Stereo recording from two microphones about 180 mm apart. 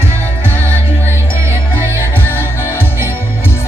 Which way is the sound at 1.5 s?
15° right (ahead or behind).